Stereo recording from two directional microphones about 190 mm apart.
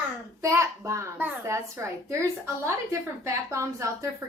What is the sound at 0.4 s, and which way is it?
A child's voice, 15° right (ahead or behind).